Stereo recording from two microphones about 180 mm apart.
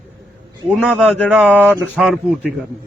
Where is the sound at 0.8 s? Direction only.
Centre (ahead or behind).